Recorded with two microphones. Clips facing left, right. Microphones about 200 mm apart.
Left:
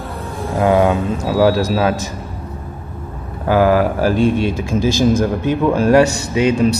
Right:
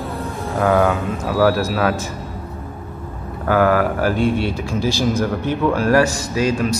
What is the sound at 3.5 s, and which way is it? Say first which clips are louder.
Speech: left 2 dB; 25° left (ahead or behind).